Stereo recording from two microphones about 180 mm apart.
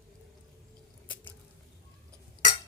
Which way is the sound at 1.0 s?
10° left (ahead or behind).